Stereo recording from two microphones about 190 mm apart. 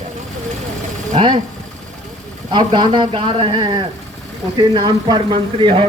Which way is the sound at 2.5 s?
25° right (ahead or behind).